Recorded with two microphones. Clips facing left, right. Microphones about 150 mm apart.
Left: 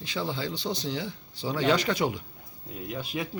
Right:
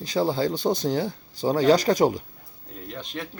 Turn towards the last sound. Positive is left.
turn(degrees=5)  # may be behind; listen again after turning